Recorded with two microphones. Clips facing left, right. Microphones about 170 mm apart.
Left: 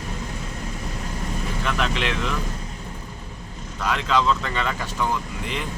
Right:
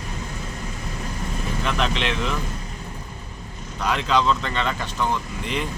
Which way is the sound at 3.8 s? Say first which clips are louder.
Right 1 dB; centre (ahead or behind).